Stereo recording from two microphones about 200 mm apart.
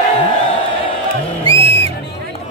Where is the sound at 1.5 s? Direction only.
30° right (ahead or behind).